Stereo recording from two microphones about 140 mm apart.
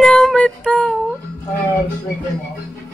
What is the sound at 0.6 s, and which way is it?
Speech, 5° right (ahead or behind).